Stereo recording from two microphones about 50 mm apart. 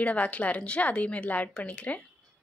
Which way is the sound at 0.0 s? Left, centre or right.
Left.